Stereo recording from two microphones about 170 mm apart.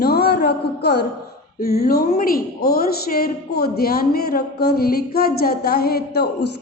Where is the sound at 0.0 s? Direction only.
70° left (ahead or behind).